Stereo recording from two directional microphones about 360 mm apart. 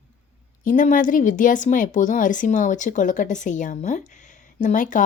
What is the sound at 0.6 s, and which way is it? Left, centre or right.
A woman's voice, left.